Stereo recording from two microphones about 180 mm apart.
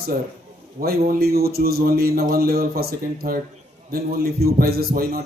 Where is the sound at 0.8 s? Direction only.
55° right (ahead or behind).